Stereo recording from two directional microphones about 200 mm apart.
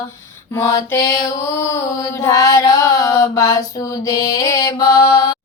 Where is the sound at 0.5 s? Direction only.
15° left (ahead or behind).